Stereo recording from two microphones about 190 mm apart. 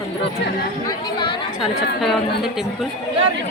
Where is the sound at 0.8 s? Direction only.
25° left (ahead or behind).